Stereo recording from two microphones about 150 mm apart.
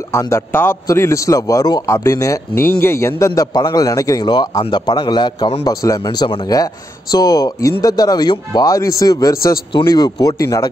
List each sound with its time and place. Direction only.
0.1 s speech: 20° left (ahead or behind)